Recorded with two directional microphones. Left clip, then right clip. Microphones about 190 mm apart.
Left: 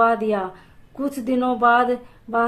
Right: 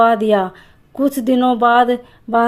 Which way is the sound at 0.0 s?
40° right (ahead or behind).